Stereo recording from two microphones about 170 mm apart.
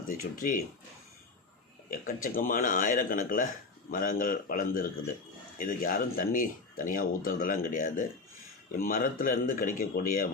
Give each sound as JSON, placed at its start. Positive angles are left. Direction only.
{"t": 0.1, "sound": "speech", "side_deg": 55}
{"t": 1.9, "sound": "speech", "side_deg": 55}